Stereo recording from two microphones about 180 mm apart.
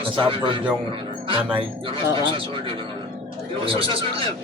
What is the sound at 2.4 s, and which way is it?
A man's voice, 30° right (ahead or behind).